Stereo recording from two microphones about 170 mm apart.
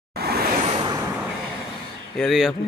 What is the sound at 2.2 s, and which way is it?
Speech, centre (ahead or behind).